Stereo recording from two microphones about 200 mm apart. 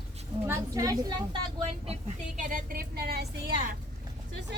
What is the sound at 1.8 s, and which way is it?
A woman's voice, 35° right (ahead or behind).